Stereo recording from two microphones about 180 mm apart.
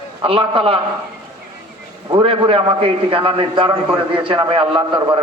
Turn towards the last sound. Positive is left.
turn(degrees=-30)  # may be behind; listen again after turning